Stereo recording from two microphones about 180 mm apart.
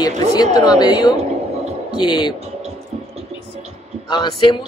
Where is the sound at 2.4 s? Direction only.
35° right (ahead or behind).